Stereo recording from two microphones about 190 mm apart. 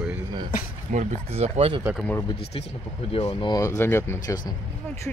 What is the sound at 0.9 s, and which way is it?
Speech, 35° right (ahead or behind).